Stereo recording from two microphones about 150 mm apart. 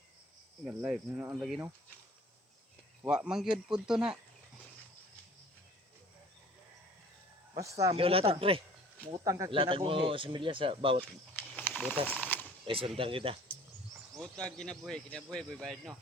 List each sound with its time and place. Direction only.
0.6 s speech: 10° right (ahead or behind)
1.4 s speech: centre (ahead or behind)
3.0 s speech: 5° right (ahead or behind)
7.5 s speech: 20° right (ahead or behind)
7.9 s speech: 40° right (ahead or behind)
9.2 s speech: 20° right (ahead or behind)
9.5 s speech: 35° right (ahead or behind)
11.5 s snake: 10° left (ahead or behind)
12.0 s a sound: 10° left (ahead or behind)
12.6 s speech: 40° right (ahead or behind)
14.4 s speech: 5° left (ahead or behind)